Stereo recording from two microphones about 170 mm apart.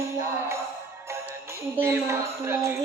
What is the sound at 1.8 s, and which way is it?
Music, 15° right (ahead or behind).